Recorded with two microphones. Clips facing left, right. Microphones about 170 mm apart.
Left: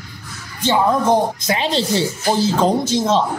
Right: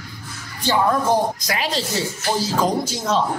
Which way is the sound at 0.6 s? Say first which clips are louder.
Left 3 dB; 20° left (ahead or behind).